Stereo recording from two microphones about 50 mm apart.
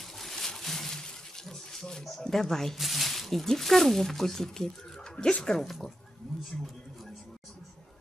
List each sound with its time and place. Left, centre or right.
0.2 s water: centre
5.1 s speech: left
5.4 s speech: centre